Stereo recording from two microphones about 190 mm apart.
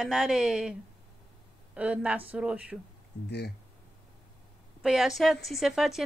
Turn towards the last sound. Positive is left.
turn(degrees=0)  # may be behind; listen again after turning